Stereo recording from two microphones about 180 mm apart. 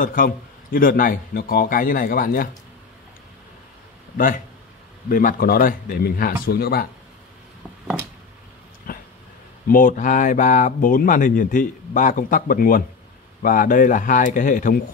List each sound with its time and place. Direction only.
0.0 s speech: 50° left (ahead or behind)
5.1 s speech: 55° left (ahead or behind)
8.9 s a sound: 50° left (ahead or behind)
9.7 s speech: 50° left (ahead or behind)